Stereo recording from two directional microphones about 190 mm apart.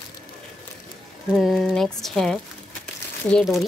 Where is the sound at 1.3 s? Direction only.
Centre (ahead or behind).